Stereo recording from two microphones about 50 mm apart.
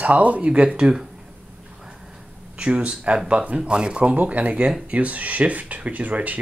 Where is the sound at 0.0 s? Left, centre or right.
Right.